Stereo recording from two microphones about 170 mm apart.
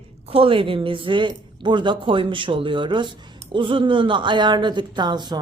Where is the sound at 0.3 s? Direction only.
35° right (ahead or behind).